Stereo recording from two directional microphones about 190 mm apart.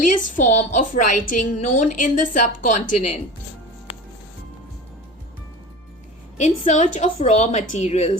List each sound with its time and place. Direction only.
0.3 s a woman's voice: 40° left (ahead or behind)
6.3 s a woman's voice: 40° left (ahead or behind)